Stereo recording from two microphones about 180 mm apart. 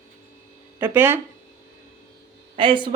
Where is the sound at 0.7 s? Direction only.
10° right (ahead or behind).